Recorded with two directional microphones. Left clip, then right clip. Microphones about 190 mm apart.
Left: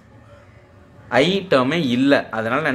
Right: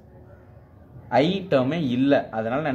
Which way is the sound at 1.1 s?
15° left (ahead or behind).